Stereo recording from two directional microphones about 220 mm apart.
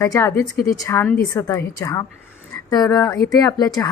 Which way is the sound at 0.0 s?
10° left (ahead or behind).